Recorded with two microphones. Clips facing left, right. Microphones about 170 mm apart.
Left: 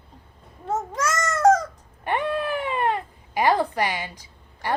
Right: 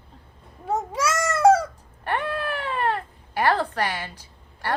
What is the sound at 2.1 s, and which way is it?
Cat, 10° left (ahead or behind).